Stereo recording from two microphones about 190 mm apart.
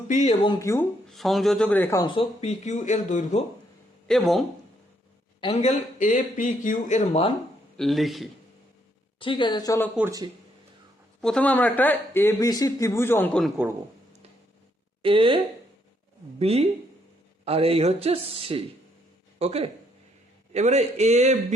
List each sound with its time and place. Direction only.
0.1 s speech: 35° left (ahead or behind)
0.6 s speech: 15° left (ahead or behind)
1.0 s speech: centre (ahead or behind)
2.0 s speech: 30° left (ahead or behind)
4.1 s speech: centre (ahead or behind)
5.4 s speech: 30° left (ahead or behind)
7.8 s speech: centre (ahead or behind)
9.1 s speech: 25° left (ahead or behind)
11.2 s speech: 5° left (ahead or behind)
15.0 s speech: 25° right (ahead or behind)
16.4 s speech: 30° right (ahead or behind)